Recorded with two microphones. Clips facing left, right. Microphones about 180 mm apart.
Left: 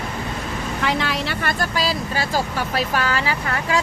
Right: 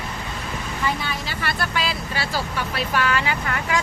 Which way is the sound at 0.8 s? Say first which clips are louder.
Left 4 dB; 90° left.